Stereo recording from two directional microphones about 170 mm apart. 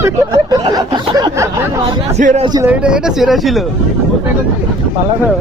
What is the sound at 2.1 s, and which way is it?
Speech, 45° right (ahead or behind).